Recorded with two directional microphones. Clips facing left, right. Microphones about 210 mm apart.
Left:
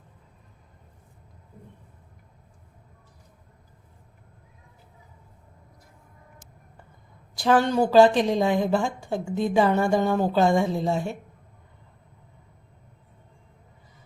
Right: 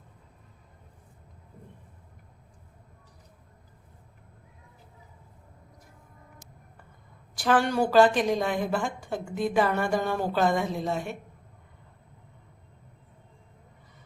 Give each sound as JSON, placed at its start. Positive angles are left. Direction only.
{"t": 7.3, "sound": "speech", "side_deg": 25}